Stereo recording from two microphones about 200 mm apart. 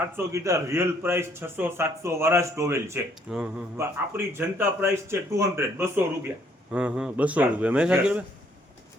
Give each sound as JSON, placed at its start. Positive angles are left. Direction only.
{"t": 0.2, "sound": "a man's voice", "side_deg": -15}